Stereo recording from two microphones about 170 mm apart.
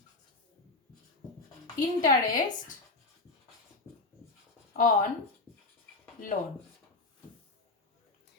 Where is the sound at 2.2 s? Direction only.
55° left (ahead or behind).